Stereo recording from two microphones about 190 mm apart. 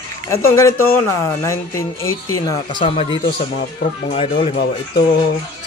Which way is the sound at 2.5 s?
30° left (ahead or behind).